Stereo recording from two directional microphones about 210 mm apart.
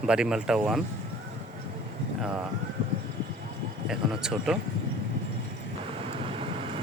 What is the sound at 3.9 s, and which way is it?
Speech, 5° right (ahead or behind).